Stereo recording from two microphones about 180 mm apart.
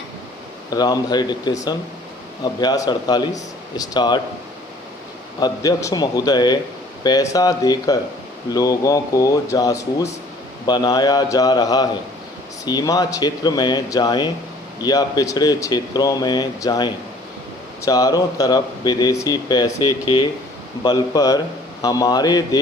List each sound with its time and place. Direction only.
0.7 s speech: 20° left (ahead or behind)
5.4 s speech: 20° left (ahead or behind)